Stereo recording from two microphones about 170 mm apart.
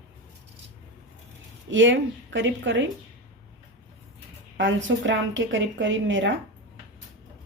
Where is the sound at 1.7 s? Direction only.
90° right.